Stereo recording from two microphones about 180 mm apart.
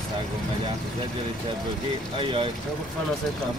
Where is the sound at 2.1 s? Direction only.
30° right (ahead or behind).